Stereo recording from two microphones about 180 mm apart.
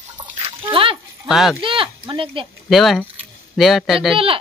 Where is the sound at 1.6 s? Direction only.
30° right (ahead or behind).